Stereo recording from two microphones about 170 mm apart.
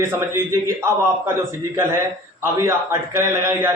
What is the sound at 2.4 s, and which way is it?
A man's voice, 15° right (ahead or behind).